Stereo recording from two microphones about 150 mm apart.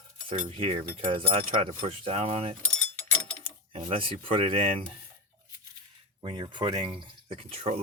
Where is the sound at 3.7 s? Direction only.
40° right (ahead or behind).